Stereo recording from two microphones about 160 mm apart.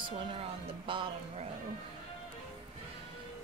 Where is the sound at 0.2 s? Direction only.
30° right (ahead or behind).